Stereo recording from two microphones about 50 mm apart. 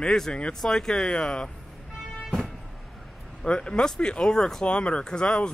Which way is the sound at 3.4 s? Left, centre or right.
Centre.